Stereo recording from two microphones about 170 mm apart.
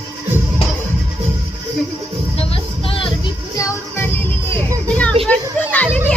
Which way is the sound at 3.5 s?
15° left (ahead or behind).